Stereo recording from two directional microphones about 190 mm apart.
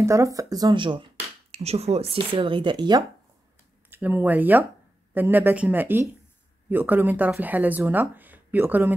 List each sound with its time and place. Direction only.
0.0 s speech: 15° right (ahead or behind)
3.9 s speech: 10° right (ahead or behind)